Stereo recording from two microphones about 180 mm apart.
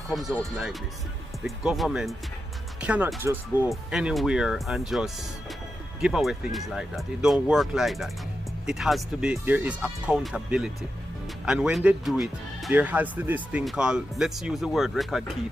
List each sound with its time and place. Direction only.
0.1 s speech: centre (ahead or behind)